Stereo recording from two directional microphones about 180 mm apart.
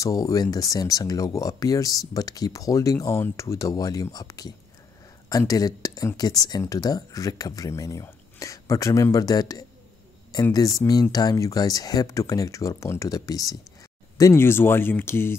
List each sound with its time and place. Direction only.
0.0 s speech: 20° left (ahead or behind)